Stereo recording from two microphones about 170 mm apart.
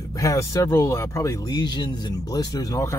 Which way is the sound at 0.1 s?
20° left (ahead or behind).